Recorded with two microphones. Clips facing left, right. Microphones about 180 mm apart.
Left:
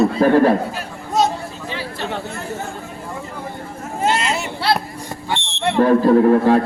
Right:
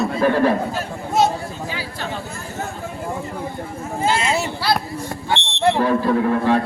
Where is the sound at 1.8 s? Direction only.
65° left (ahead or behind).